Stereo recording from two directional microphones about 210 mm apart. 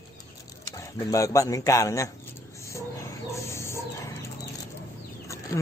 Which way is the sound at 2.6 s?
15° left (ahead or behind).